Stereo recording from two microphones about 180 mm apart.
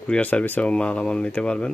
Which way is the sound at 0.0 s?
5° left (ahead or behind).